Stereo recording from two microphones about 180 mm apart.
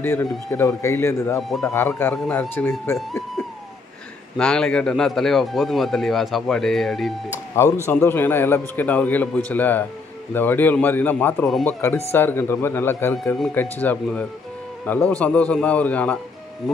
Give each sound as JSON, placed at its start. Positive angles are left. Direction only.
{"t": 0.0, "sound": "a man's voice", "side_deg": 15}
{"t": 4.4, "sound": "speech", "side_deg": 5}
{"t": 7.8, "sound": "a man's voice", "side_deg": 15}